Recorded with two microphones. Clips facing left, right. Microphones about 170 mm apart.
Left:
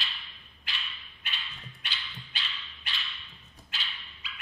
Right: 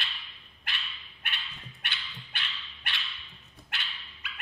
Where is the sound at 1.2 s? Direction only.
60° right (ahead or behind).